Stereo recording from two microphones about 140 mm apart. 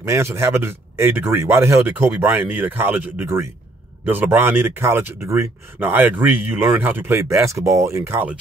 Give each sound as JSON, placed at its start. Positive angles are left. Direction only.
{"t": 0.0, "sound": "speech", "side_deg": -20}